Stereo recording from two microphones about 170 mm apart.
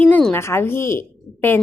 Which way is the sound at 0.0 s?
5° left (ahead or behind).